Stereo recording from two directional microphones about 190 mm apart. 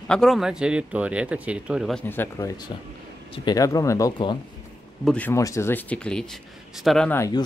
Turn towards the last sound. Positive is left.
turn(degrees=20)  # may be behind; listen again after turning